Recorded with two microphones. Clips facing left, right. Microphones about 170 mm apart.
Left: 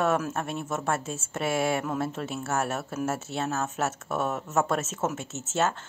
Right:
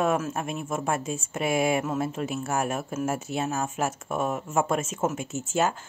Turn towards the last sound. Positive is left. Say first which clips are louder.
# right 2 dB
turn(degrees=-10)  # may be behind; listen again after turning